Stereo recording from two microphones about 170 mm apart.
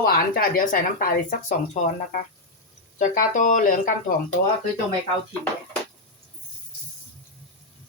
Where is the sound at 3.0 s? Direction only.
50° left (ahead or behind).